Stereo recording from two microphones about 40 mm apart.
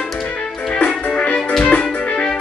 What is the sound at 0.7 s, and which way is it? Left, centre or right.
Music, left.